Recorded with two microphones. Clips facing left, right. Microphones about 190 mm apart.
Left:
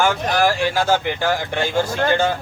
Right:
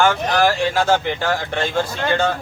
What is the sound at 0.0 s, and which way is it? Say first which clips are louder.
Speech: right 1 dB; 10° left (ahead or behind).